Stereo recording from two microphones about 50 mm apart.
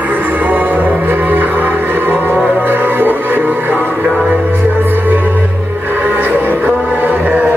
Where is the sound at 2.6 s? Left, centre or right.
Right.